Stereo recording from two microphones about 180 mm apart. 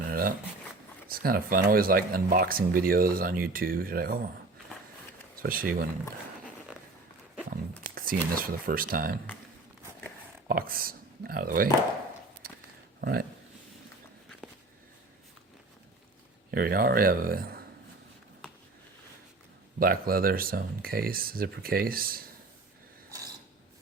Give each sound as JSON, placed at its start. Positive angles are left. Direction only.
{"t": 0.1, "sound": "a sound", "side_deg": -55}
{"t": 1.0, "sound": "speech", "side_deg": -55}
{"t": 5.4, "sound": "speech", "side_deg": -55}
{"t": 7.9, "sound": "speech", "side_deg": -55}
{"t": 10.5, "sound": "speech", "side_deg": -55}
{"t": 12.4, "sound": "a sound", "side_deg": -55}
{"t": 13.0, "sound": "speech", "side_deg": -55}
{"t": 16.5, "sound": "speech", "side_deg": -55}
{"t": 19.8, "sound": "speech", "side_deg": -55}